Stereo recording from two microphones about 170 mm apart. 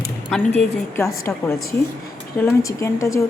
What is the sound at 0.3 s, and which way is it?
Speech, centre (ahead or behind).